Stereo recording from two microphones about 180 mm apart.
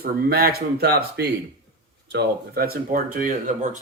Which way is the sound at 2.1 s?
50° right (ahead or behind).